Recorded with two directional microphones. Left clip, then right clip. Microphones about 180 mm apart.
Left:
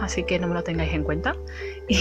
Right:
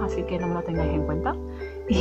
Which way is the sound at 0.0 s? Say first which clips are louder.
Left 2 dB; 20° left (ahead or behind).